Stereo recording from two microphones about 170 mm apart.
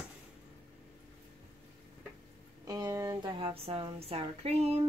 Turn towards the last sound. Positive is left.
turn(degrees=-40)  # may be behind; listen again after turning